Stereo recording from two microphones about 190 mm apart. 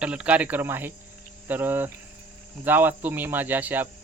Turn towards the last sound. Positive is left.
turn(degrees=-10)  # may be behind; listen again after turning